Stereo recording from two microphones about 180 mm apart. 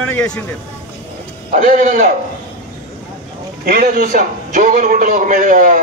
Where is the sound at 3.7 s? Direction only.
50° right (ahead or behind).